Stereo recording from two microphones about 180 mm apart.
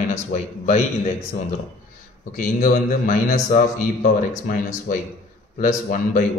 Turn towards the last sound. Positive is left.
turn(degrees=45)  # may be behind; listen again after turning